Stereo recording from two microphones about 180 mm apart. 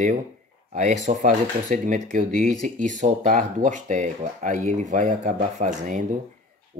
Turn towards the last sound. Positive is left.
turn(degrees=-45)  # may be behind; listen again after turning